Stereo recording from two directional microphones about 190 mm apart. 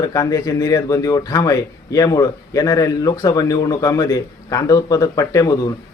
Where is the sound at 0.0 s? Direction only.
20° left (ahead or behind).